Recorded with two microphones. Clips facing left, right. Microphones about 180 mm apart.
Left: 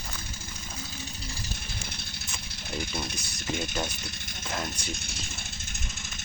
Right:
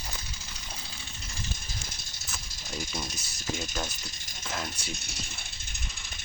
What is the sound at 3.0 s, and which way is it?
Speech, 60° left (ahead or behind).